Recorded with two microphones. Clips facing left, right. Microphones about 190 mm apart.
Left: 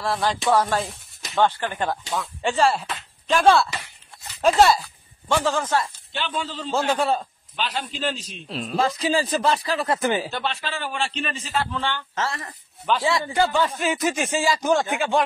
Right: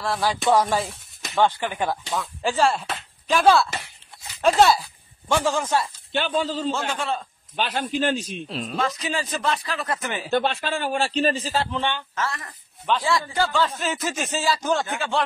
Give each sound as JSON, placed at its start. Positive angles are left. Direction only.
{"t": 0.0, "sound": "speech", "side_deg": 0}
{"t": 0.5, "sound": "speech", "side_deg": -15}
{"t": 0.7, "sound": "a sound", "side_deg": 0}
{"t": 1.4, "sound": "speech", "side_deg": -10}
{"t": 5.3, "sound": "speech", "side_deg": -15}
{"t": 6.3, "sound": "a man's voice", "side_deg": -40}
{"t": 6.7, "sound": "speech", "side_deg": 35}
{"t": 7.5, "sound": "a man's voice", "side_deg": -50}
{"t": 8.5, "sound": "speech", "side_deg": 0}
{"t": 8.7, "sound": "speech", "side_deg": 30}
{"t": 10.3, "sound": "a man's voice", "side_deg": -50}
{"t": 11.7, "sound": "speech", "side_deg": -20}
{"t": 12.2, "sound": "speech", "side_deg": 30}